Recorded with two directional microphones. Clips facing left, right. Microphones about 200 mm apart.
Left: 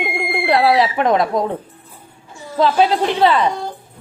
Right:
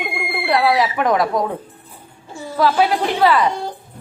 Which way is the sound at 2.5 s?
25° left (ahead or behind).